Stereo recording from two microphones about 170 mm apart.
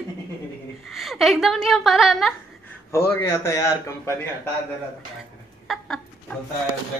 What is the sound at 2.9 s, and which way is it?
A woman's voice, 15° left (ahead or behind).